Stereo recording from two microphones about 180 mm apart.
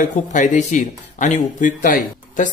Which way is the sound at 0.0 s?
45° left (ahead or behind).